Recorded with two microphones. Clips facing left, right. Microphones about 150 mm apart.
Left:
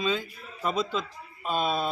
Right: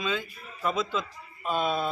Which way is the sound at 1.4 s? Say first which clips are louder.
Even; 5° left (ahead or behind).